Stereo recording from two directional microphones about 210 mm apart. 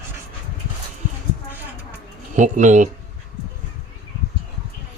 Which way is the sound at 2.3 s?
35° right (ahead or behind).